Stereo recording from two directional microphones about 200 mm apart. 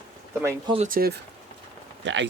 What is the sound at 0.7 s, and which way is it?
Speech, 45° right (ahead or behind).